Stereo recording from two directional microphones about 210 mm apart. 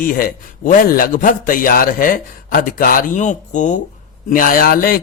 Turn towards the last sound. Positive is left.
turn(degrees=45)  # may be behind; listen again after turning